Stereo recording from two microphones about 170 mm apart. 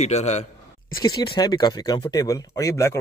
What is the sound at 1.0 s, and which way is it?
Speech, 25° left (ahead or behind).